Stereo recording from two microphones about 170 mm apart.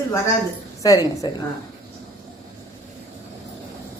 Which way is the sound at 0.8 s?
20° left (ahead or behind).